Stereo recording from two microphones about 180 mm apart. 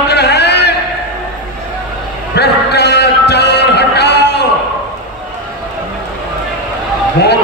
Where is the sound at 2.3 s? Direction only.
65° left (ahead or behind).